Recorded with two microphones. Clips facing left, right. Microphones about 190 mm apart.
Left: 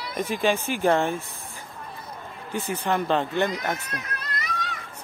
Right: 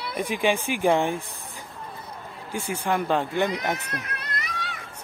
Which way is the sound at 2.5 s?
10° right (ahead or behind).